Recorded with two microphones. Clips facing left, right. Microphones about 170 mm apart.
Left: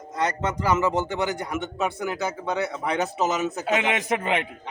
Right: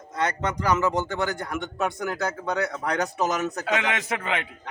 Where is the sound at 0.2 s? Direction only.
5° left (ahead or behind).